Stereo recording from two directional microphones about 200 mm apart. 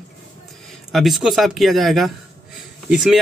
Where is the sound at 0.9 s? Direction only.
Centre (ahead or behind).